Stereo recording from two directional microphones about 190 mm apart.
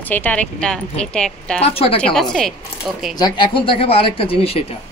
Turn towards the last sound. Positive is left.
turn(degrees=30)  # may be behind; listen again after turning